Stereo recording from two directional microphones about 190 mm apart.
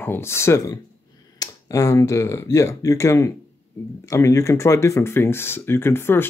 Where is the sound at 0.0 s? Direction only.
10° left (ahead or behind).